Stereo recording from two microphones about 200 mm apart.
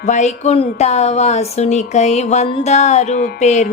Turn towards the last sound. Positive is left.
turn(degrees=35)  # may be behind; listen again after turning